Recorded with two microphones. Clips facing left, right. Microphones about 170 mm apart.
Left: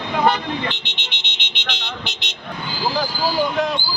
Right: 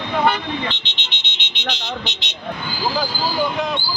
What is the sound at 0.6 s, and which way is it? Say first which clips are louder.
Vehicle: left 1 dB; 55° left (ahead or behind).